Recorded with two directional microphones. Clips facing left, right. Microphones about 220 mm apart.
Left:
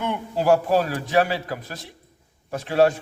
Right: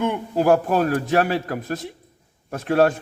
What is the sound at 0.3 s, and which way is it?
A man's voice, 50° right (ahead or behind).